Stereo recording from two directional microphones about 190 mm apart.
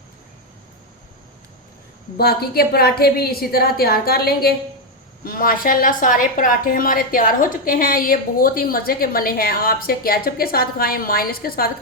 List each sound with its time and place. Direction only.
2.1 s a woman's voice: 55° left (ahead or behind)